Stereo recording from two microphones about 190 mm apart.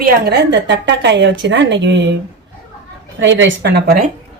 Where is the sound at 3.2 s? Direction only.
75° right (ahead or behind); by 4.1 s 50° right (ahead or behind).